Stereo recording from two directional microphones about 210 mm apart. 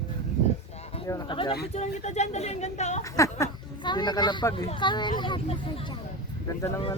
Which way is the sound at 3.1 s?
15° left (ahead or behind).